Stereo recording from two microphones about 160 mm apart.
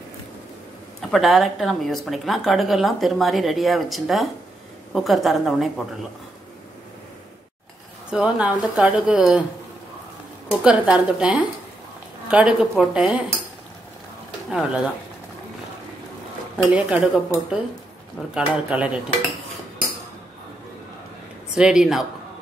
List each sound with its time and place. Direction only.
1.1 s a woman's voice: centre (ahead or behind)
8.1 s a woman's voice: 5° right (ahead or behind)
10.6 s a woman's voice: 5° right (ahead or behind)
14.5 s a woman's voice: 5° right (ahead or behind)
16.7 s a woman's voice: 5° right (ahead or behind)
21.5 s a woman's voice: 5° right (ahead or behind)